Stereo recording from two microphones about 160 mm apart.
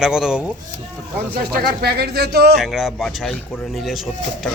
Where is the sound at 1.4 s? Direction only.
75° right (ahead or behind).